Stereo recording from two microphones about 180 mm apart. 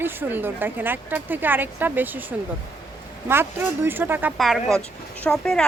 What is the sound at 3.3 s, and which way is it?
Speech, 10° right (ahead or behind).